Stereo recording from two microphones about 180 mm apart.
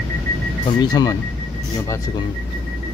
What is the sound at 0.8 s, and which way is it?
Speech, 20° left (ahead or behind).